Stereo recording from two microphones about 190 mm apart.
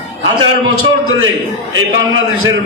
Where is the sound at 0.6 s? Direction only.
90° right.